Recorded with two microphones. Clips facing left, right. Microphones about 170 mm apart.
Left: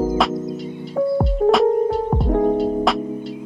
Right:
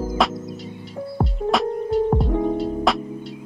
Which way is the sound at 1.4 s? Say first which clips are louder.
Left 8 dB; 55° left (ahead or behind).